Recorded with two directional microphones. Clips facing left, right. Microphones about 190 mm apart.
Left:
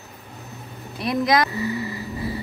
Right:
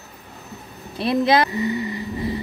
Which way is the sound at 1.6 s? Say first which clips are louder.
Right 3 dB; 30° left (ahead or behind).